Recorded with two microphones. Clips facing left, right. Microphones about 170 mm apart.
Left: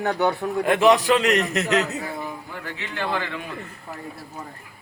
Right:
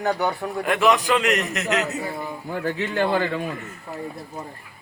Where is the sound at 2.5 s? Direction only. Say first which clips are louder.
Right 9 dB; 45° right (ahead or behind).